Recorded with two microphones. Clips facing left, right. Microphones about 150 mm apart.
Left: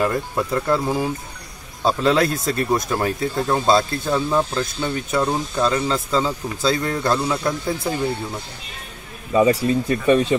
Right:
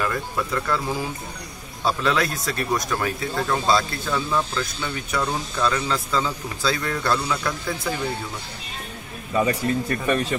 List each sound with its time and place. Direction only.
0.0 s speech: 30° left (ahead or behind)
9.7 s speech: 15° left (ahead or behind)